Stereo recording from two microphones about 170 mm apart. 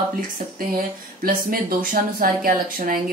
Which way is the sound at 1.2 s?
60° right (ahead or behind).